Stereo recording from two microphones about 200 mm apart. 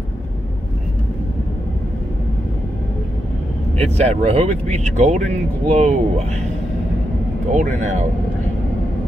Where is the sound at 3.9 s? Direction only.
30° right (ahead or behind).